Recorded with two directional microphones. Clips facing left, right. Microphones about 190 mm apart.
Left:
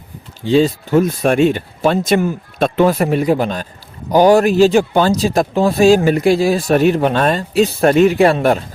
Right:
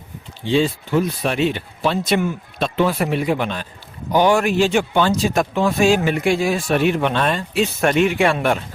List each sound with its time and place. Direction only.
0.4 s speech: 40° left (ahead or behind)